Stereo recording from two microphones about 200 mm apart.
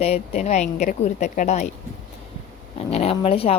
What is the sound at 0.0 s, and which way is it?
A woman's voice, 35° left (ahead or behind).